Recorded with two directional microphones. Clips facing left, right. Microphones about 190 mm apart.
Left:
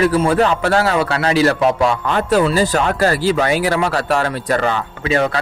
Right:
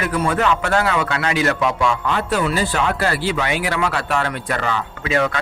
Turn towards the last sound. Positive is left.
turn(degrees=35)  # may be behind; listen again after turning